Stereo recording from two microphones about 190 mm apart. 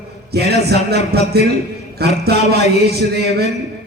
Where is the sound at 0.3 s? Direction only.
60° right (ahead or behind).